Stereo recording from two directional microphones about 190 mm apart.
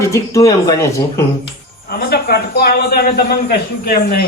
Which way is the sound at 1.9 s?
55° left (ahead or behind).